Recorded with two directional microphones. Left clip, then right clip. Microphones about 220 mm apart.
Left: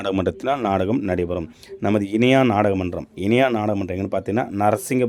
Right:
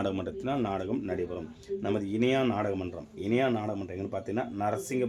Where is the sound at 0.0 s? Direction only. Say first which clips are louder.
Left 10 dB; 35° left (ahead or behind).